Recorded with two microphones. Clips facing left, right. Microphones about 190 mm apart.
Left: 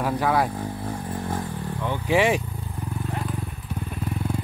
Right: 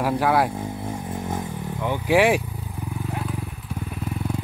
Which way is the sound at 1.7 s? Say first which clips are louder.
Right 3 dB; 10° right (ahead or behind).